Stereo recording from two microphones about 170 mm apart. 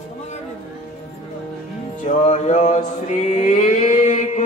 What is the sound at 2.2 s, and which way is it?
Mantra, 45° left (ahead or behind).